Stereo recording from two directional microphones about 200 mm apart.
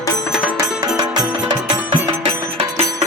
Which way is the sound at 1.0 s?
20° right (ahead or behind).